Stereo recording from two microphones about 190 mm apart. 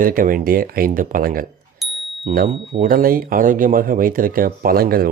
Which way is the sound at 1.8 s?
Centre (ahead or behind).